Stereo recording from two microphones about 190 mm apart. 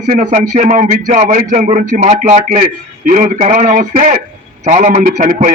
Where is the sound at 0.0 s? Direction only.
35° right (ahead or behind).